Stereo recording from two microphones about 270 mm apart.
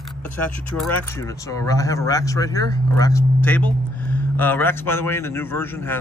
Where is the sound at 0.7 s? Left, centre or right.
Centre.